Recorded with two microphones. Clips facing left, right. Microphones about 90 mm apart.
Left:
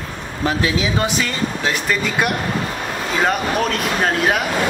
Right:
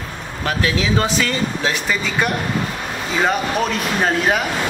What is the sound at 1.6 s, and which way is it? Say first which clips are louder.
Speech: left 1 dB; centre (ahead or behind).